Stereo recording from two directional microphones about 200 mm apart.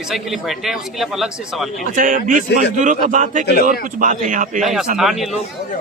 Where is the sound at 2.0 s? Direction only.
40° right (ahead or behind).